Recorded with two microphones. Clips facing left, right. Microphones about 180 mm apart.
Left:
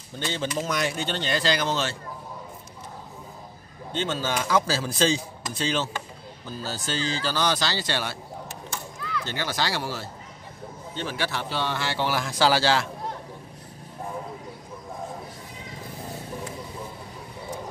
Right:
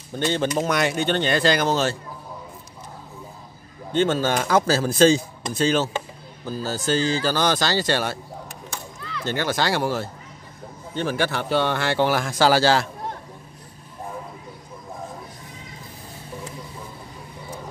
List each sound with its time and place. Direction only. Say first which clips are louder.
0.1 s speech: right 8 dB; 55° right (ahead or behind)
0.7 s speech: right 6 dB; 65° right (ahead or behind); by 2.0 s 40° right (ahead or behind)
3.9 s speech: right 7 dB; 55° right (ahead or behind)
9.2 s speech: right 7 dB; 50° right (ahead or behind)